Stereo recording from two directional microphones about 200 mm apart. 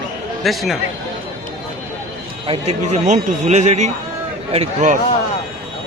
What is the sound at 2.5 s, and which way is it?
A man's voice, 35° right (ahead or behind).